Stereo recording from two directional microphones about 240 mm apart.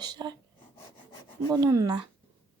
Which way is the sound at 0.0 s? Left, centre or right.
Centre.